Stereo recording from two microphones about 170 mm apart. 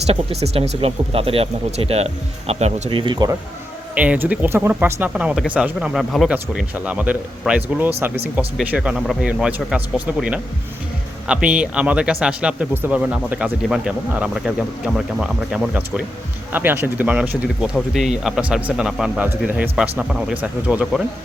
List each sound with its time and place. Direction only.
0.1 s speech: 35° right (ahead or behind)
3.0 s speech: 25° right (ahead or behind)
3.9 s speech: 10° right (ahead or behind)